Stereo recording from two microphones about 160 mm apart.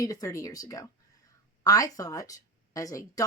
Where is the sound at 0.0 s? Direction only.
20° left (ahead or behind).